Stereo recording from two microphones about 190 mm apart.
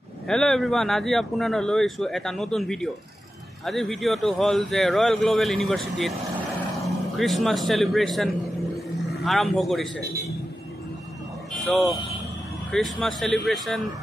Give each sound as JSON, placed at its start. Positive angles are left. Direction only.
{"t": 0.3, "sound": "a man's voice", "side_deg": 5}
{"t": 11.6, "sound": "speech", "side_deg": 0}